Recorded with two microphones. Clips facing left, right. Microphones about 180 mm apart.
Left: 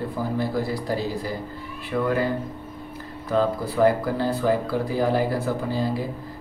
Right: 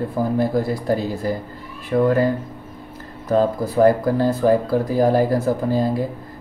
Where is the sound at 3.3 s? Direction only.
45° right (ahead or behind).